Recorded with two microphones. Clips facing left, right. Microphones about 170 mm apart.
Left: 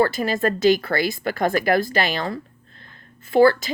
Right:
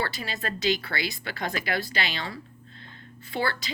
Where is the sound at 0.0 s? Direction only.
50° left (ahead or behind).